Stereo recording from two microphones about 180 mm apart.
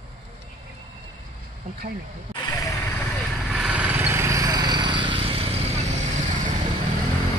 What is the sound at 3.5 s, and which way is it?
Vehicle, 5° right (ahead or behind).